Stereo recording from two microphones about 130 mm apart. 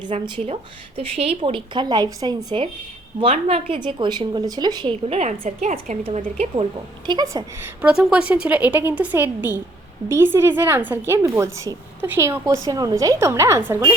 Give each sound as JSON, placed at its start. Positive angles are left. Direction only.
{"t": 0.0, "sound": "a woman's voice", "side_deg": -40}
{"t": 3.3, "sound": "a woman's voice", "side_deg": -50}
{"t": 3.8, "sound": "a woman's voice", "side_deg": -35}
{"t": 5.0, "sound": "a woman's voice", "side_deg": -50}
{"t": 5.5, "sound": "a woman's voice", "side_deg": -80}
{"t": 6.1, "sound": "a woman's voice", "side_deg": -55}
{"t": 7.1, "sound": "a woman's voice", "side_deg": -30}
{"t": 7.8, "sound": "a woman's voice", "side_deg": -10}